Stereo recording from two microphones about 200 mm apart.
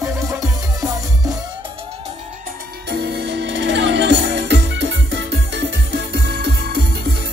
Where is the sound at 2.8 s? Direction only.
55° right (ahead or behind).